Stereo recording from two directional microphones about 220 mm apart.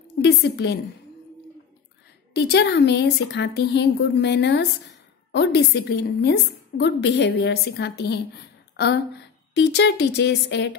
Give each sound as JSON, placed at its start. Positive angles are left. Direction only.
{"t": 0.2, "sound": "a woman's voice", "side_deg": 50}
{"t": 2.3, "sound": "a woman's voice", "side_deg": 50}